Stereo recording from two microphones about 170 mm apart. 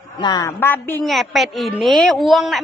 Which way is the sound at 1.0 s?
Centre (ahead or behind).